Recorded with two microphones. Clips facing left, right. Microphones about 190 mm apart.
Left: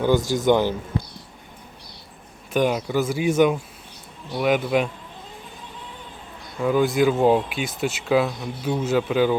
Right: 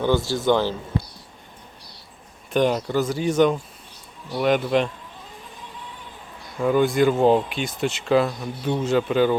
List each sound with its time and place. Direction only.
0.0 s speech: 15° left (ahead or behind)
2.5 s speech: 5° left (ahead or behind)
6.6 s speech: centre (ahead or behind)